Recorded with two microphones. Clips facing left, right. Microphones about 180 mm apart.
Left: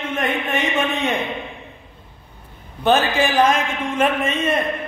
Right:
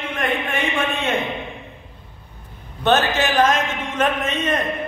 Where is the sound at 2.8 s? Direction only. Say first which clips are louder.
Left 1 dB; 10° left (ahead or behind).